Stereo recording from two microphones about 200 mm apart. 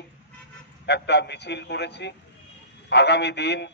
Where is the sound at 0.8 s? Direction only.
55° left (ahead or behind).